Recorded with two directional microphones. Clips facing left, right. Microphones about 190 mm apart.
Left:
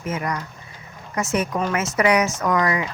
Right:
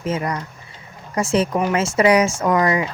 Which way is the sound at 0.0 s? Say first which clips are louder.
Right 3 dB; 30° right (ahead or behind).